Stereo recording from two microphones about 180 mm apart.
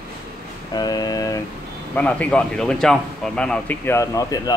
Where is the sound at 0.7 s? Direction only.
20° left (ahead or behind).